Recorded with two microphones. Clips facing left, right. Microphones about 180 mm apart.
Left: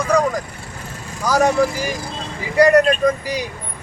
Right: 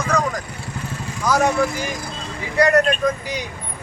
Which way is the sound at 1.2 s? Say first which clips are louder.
Left 2 dB; 10° left (ahead or behind).